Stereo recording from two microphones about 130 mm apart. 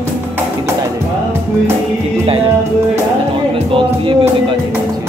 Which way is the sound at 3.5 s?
45° right (ahead or behind).